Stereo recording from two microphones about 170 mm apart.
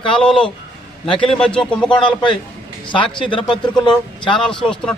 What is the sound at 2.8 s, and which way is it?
A man's voice, 30° left (ahead or behind).